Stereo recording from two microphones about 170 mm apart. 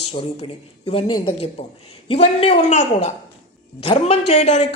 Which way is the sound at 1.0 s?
25° left (ahead or behind).